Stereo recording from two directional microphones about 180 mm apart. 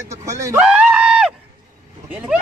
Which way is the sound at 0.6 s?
5° right (ahead or behind).